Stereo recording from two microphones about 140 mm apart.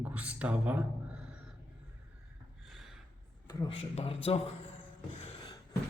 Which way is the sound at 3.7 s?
45° left (ahead or behind).